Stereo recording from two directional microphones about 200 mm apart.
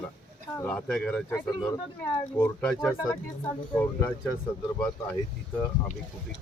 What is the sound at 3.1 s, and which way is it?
Speech, 20° left (ahead or behind).